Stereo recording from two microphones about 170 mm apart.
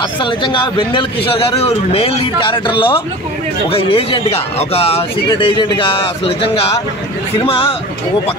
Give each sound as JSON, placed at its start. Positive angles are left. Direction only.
{"t": 0.2, "sound": "speech", "side_deg": 30}